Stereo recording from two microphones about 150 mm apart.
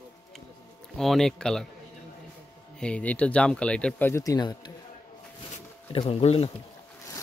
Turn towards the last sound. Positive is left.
turn(degrees=40)  # may be behind; listen again after turning